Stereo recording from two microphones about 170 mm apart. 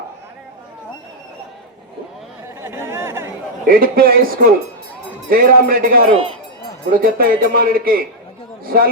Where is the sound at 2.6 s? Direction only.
15° right (ahead or behind).